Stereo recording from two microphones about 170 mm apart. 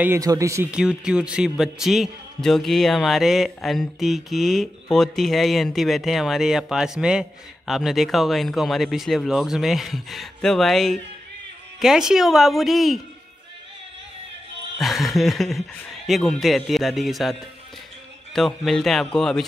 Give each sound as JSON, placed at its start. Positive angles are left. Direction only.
{"t": 0.0, "sound": "speech", "side_deg": -15}
{"t": 0.7, "sound": "speech", "side_deg": -5}
{"t": 14.8, "sound": "speech", "side_deg": 0}